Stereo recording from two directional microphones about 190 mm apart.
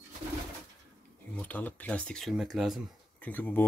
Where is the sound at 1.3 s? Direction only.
10° left (ahead or behind).